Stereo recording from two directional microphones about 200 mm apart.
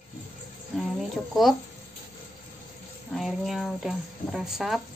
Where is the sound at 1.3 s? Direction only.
Centre (ahead or behind).